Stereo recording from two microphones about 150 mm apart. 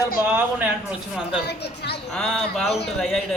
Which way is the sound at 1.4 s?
90° left.